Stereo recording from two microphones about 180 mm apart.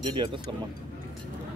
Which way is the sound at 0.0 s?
25° right (ahead or behind).